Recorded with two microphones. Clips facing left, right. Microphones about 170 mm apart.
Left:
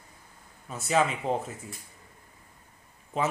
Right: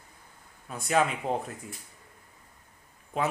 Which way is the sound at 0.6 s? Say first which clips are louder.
Even; centre (ahead or behind).